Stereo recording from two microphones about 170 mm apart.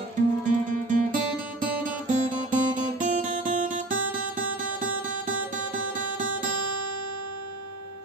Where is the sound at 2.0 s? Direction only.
50° right (ahead or behind).